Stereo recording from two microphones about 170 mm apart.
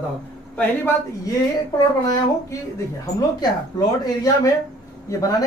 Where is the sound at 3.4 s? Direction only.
20° left (ahead or behind).